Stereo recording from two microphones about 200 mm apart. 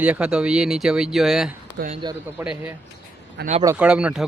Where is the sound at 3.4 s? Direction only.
55° right (ahead or behind).